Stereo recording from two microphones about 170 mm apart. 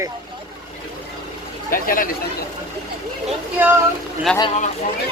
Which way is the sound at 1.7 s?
55° left (ahead or behind).